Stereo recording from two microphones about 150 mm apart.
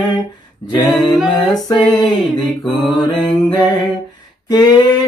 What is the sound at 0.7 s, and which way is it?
Music, 30° left (ahead or behind).